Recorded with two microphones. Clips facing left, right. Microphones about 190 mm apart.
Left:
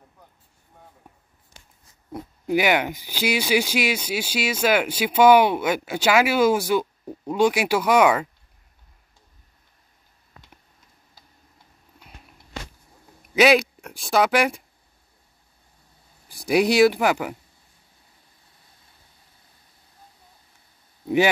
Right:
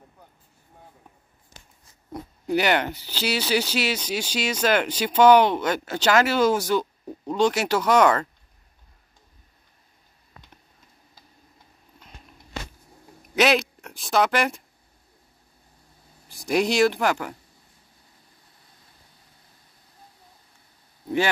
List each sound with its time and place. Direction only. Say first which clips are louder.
2.4 s speech: left 1 dB; 10° left (ahead or behind)
13.3 s speech: left 4 dB; 5° left (ahead or behind)
16.4 s speech: left 3 dB; 5° left (ahead or behind)